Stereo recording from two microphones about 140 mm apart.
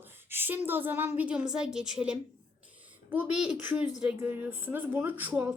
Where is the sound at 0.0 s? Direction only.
15° right (ahead or behind).